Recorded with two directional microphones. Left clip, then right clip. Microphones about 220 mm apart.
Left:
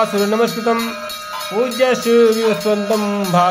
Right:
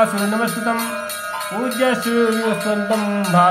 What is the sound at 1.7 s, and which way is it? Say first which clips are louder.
Music: left 4 dB; 35° left (ahead or behind).